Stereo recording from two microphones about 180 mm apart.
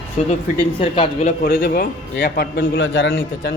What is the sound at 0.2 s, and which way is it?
Speech, 35° left (ahead or behind).